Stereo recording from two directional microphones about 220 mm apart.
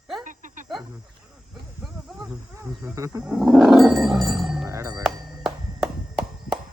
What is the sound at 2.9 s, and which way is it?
Speech, 15° right (ahead or behind).